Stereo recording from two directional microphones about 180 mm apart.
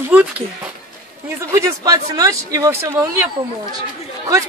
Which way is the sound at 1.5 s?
20° right (ahead or behind).